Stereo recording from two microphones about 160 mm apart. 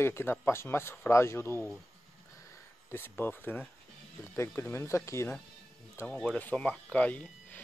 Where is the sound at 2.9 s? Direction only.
15° left (ahead or behind).